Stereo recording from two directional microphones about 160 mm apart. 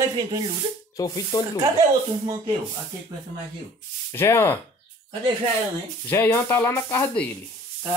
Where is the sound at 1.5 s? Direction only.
25° right (ahead or behind).